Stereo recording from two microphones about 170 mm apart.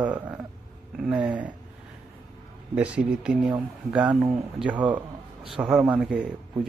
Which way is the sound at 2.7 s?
5° right (ahead or behind).